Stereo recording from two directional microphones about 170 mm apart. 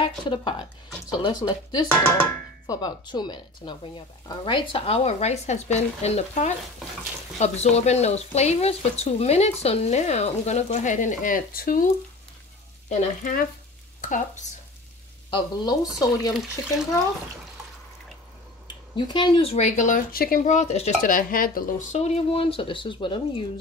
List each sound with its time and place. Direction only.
0.0 s speech: 30° left (ahead or behind); by 11.8 s 55° left (ahead or behind)
12.9 s frying: 45° left (ahead or behind)
15.3 s speech: 25° left (ahead or behind)
18.9 s speech: 25° left (ahead or behind)